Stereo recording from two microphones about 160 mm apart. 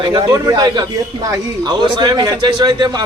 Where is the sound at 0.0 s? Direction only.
25° right (ahead or behind).